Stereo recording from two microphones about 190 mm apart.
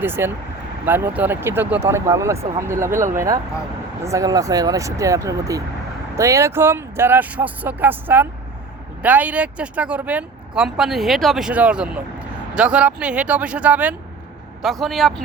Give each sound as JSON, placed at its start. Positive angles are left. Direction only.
{"t": 0.0, "sound": "speech", "side_deg": -10}